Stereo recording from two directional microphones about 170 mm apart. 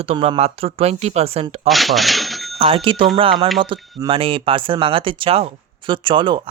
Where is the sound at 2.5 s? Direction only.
30° right (ahead or behind).